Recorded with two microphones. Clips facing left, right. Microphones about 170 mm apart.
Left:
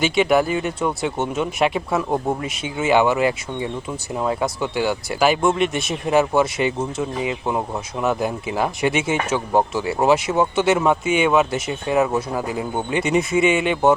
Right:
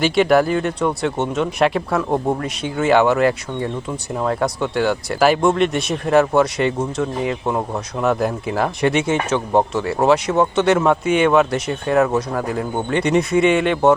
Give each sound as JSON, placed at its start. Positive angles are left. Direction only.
{"t": 0.0, "sound": "speech", "side_deg": 0}